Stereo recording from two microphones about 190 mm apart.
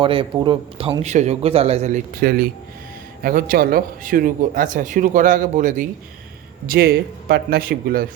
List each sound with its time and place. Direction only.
0.0 s a man's voice: 25° right (ahead or behind)
2.2 s speech: 55° right (ahead or behind)